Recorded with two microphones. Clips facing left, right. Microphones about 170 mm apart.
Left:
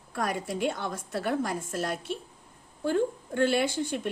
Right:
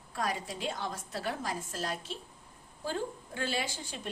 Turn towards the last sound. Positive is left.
turn(degrees=60)  # may be behind; listen again after turning